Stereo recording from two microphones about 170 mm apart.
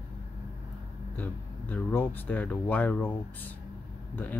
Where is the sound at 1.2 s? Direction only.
10° left (ahead or behind).